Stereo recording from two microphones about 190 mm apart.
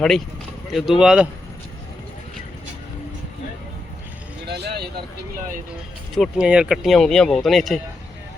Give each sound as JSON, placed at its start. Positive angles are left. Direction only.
{"t": 0.7, "sound": "speech", "side_deg": 0}
{"t": 4.4, "sound": "vehicle", "side_deg": -60}
{"t": 6.1, "sound": "speech", "side_deg": 0}